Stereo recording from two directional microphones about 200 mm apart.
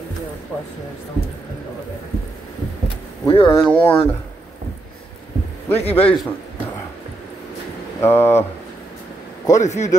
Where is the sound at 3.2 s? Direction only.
25° left (ahead or behind).